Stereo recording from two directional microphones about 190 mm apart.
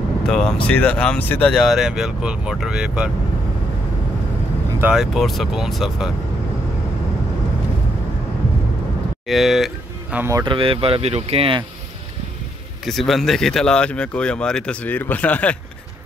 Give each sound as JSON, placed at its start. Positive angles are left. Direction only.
{"t": 0.3, "sound": "speech", "side_deg": 0}
{"t": 4.7, "sound": "speech", "side_deg": -5}
{"t": 9.3, "sound": "speech", "side_deg": 0}
{"t": 10.1, "sound": "speech", "side_deg": -15}
{"t": 10.4, "sound": "speech", "side_deg": -25}
{"t": 12.8, "sound": "speech", "side_deg": 0}